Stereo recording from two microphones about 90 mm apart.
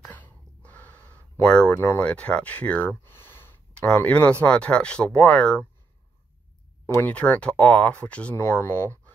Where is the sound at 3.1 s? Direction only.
25° left (ahead or behind).